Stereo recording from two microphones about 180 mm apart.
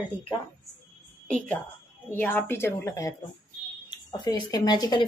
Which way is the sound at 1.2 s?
5° left (ahead or behind).